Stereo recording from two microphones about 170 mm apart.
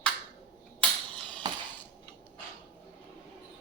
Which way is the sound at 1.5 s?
25° right (ahead or behind).